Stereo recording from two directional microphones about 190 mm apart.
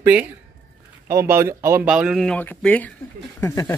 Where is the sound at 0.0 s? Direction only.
10° right (ahead or behind).